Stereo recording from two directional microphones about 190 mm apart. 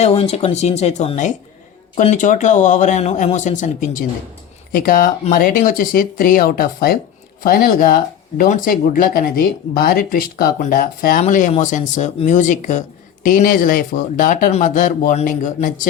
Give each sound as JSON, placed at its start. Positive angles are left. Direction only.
{"t": 0.0, "sound": "speech", "side_deg": 30}